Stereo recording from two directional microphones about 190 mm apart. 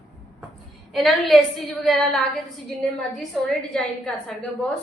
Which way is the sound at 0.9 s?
Centre (ahead or behind).